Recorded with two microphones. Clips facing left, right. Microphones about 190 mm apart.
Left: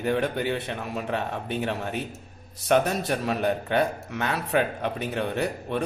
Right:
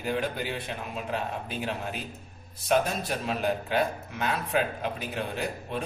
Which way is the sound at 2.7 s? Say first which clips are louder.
Left 4 dB; 70° left (ahead or behind).